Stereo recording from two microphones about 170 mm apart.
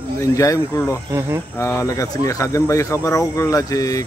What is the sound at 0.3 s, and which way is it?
Speech, 20° left (ahead or behind).